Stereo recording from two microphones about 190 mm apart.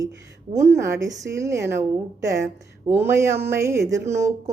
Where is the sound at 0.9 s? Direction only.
70° right (ahead or behind).